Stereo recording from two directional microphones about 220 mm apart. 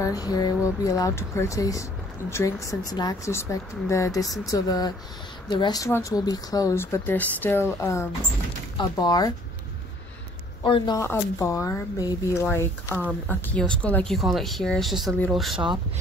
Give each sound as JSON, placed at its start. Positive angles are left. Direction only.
{"t": 0.0, "sound": "speech", "side_deg": 15}
{"t": 10.6, "sound": "speech", "side_deg": 20}